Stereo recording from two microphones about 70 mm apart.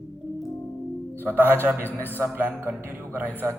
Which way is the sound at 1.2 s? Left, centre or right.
Right.